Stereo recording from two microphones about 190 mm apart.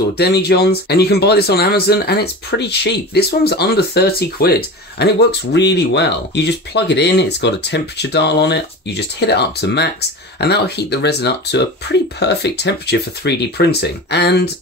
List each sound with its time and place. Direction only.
0.2 s speech: 60° left (ahead or behind)